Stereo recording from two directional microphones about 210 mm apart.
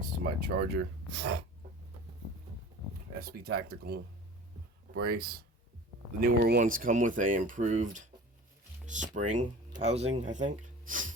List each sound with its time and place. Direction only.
0.0 s speech: 45° right (ahead or behind)
1.1 s sneeze: 55° right (ahead or behind)
3.2 s speech: 45° right (ahead or behind)